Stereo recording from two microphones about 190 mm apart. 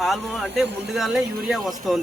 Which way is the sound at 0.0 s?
Centre (ahead or behind).